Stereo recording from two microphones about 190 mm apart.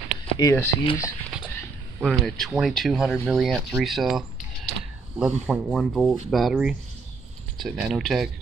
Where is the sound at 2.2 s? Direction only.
Centre (ahead or behind).